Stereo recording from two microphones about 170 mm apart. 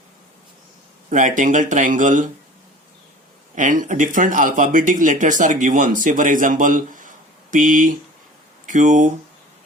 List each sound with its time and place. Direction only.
1.1 s speech: 50° right (ahead or behind)
3.5 s speech: 50° right (ahead or behind)